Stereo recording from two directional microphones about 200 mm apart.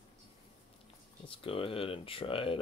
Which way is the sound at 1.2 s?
25° left (ahead or behind).